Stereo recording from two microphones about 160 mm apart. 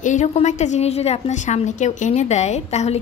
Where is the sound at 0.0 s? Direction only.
50° left (ahead or behind).